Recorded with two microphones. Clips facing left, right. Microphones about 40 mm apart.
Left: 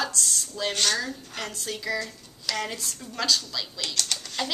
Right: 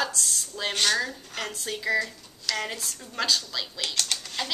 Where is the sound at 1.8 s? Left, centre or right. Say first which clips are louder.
Right 5 dB; centre.